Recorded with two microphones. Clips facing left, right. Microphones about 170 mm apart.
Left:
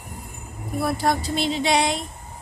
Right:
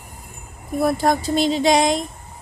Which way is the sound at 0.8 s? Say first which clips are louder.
Right 4 dB; 45° right (ahead or behind).